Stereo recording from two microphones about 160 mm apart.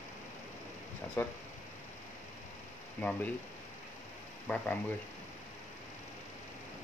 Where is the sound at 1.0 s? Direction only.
15° left (ahead or behind).